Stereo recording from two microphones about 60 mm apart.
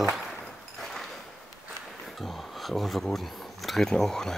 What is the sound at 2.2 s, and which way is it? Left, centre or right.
Speech, centre.